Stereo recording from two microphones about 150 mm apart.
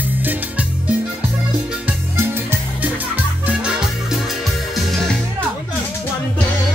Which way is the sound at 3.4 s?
5° right (ahead or behind).